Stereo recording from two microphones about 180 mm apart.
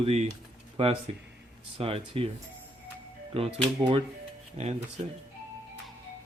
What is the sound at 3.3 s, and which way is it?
Speech, 30° right (ahead or behind).